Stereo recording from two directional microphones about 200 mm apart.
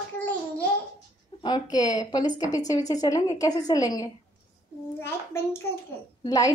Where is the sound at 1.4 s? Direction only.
20° left (ahead or behind).